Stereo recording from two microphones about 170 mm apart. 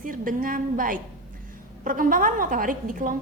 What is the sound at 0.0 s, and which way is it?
A woman's voice, 55° right (ahead or behind).